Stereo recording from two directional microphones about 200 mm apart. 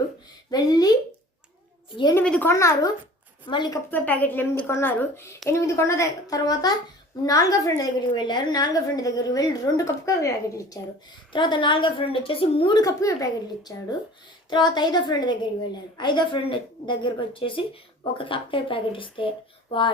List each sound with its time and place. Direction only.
0.5 s a woman's voice: 20° left (ahead or behind)
2.0 s a woman's voice: 20° left (ahead or behind)
2.2 s a woman's voice: 5° left (ahead or behind); by 3.8 s 20° left (ahead or behind)
3.9 s a woman's voice: 10° left (ahead or behind); by 19.3 s 25° left (ahead or behind)